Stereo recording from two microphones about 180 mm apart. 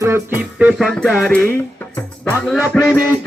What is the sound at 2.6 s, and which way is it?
Music, 10° left (ahead or behind).